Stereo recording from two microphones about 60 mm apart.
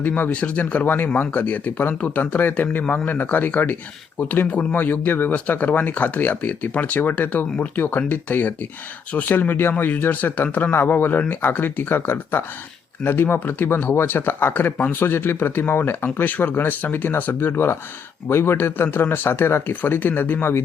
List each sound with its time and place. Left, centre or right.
0.0 s speech: left
19.7 s speech: left